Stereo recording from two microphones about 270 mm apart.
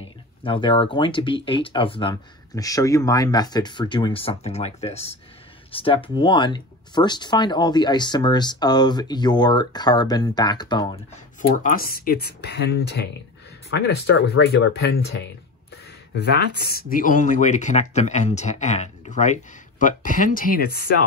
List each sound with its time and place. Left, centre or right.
0.0 s speech: centre
11.7 s speech: left